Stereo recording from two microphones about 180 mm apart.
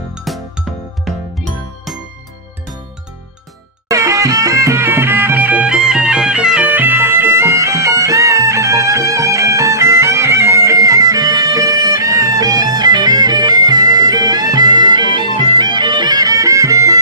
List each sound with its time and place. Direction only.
0.3 s music: centre (ahead or behind)
3.8 s music: 15° right (ahead or behind)